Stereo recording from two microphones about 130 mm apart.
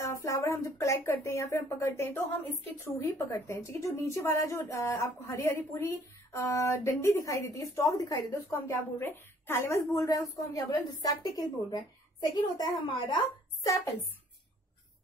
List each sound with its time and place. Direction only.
0.0 s a woman's voice: 25° left (ahead or behind)